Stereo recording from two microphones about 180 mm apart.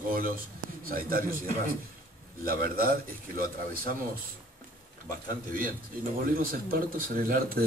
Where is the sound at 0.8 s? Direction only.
50° right (ahead or behind).